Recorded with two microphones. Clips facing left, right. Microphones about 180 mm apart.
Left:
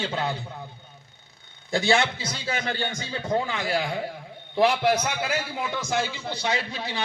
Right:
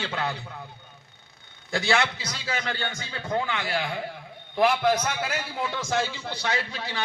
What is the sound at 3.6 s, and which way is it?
Speech, 35° left (ahead or behind).